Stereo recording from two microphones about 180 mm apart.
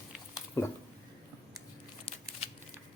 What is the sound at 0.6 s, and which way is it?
Speech, 15° left (ahead or behind).